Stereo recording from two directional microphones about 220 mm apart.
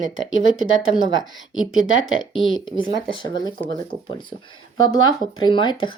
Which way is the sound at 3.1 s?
20° left (ahead or behind).